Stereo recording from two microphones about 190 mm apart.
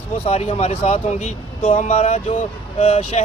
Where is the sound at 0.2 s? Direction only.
35° left (ahead or behind).